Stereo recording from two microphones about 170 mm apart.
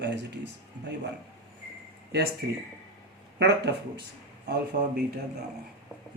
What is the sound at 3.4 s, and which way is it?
Speech, 85° right.